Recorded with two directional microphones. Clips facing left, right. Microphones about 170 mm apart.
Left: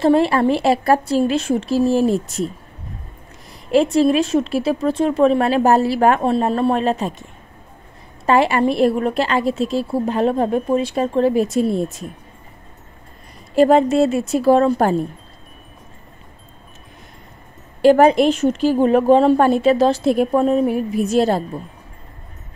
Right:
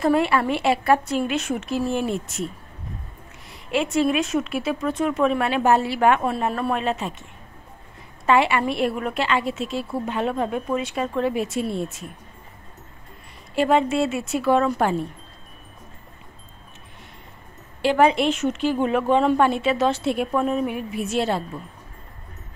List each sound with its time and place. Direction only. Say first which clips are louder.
0.0 s a woman's voice: left 5 dB; 35° left (ahead or behind)
8.3 s a woman's voice: left 4 dB; 40° left (ahead or behind)
13.6 s a woman's voice: left 7 dB; 40° left (ahead or behind)
17.8 s a woman's voice: left 7 dB; 45° left (ahead or behind)